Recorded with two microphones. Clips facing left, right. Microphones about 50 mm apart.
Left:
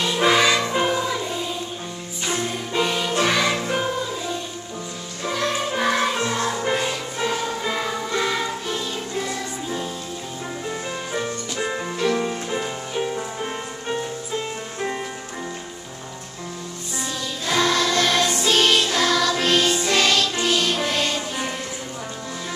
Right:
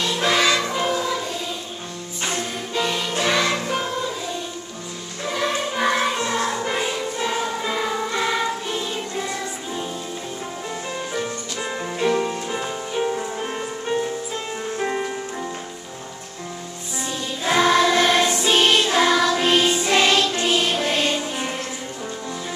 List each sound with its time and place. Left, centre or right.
0.0 s music: centre
2.2 s music: centre
5.2 s music: centre
11.1 s music: centre
17.5 s choir: centre
18.4 s music: centre